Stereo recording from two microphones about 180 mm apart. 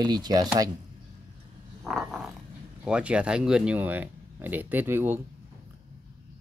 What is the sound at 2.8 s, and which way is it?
Speech, 5° right (ahead or behind).